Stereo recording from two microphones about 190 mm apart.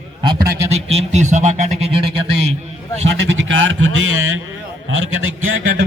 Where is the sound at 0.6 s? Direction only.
35° right (ahead or behind).